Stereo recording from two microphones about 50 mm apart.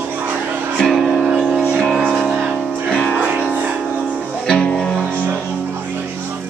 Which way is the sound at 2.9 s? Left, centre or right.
Centre.